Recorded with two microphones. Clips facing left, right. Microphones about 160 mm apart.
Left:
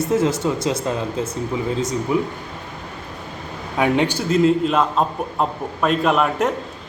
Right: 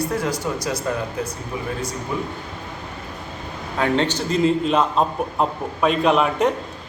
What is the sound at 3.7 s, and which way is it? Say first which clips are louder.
A man's voice: left 2 dB; 15° left (ahead or behind).